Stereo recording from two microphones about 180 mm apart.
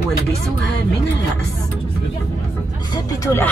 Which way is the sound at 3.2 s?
15° left (ahead or behind).